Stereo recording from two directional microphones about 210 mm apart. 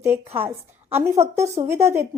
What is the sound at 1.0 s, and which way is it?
Speech, 15° right (ahead or behind).